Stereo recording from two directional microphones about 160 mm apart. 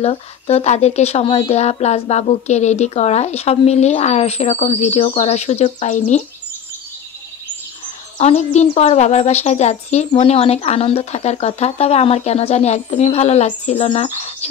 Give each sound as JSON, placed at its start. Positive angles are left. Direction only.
{"t": 0.0, "sound": "speech", "side_deg": 40}
{"t": 8.2, "sound": "speech", "side_deg": 45}